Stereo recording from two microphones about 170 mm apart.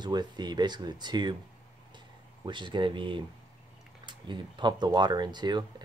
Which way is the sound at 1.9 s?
25° right (ahead or behind).